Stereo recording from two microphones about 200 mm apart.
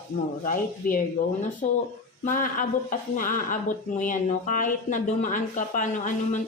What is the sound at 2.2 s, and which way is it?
A woman's voice, 40° left (ahead or behind).